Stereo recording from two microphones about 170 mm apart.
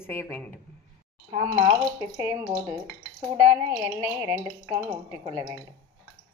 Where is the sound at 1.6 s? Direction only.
15° right (ahead or behind).